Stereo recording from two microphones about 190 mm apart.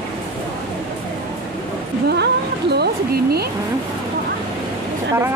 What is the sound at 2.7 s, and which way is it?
Speech, 55° right (ahead or behind).